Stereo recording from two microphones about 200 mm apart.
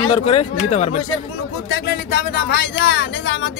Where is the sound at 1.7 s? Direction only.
60° left (ahead or behind).